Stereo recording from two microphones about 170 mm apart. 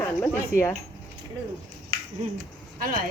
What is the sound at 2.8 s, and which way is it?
Speech, 55° right (ahead or behind).